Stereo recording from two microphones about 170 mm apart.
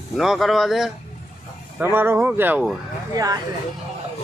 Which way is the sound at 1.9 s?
15° right (ahead or behind).